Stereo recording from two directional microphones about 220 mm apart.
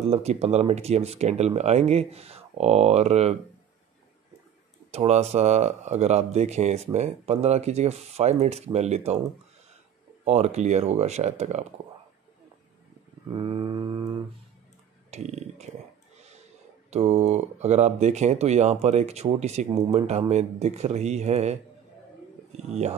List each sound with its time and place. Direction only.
0.1 s speech: 30° right (ahead or behind)
4.9 s speech: 30° right (ahead or behind)
10.2 s speech: 30° right (ahead or behind)
13.3 s mantra: 25° right (ahead or behind)
15.0 s speech: 30° right (ahead or behind)
16.9 s speech: 30° right (ahead or behind)